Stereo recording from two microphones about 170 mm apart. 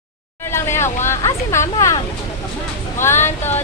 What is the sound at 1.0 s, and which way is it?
Speech, 15° left (ahead or behind).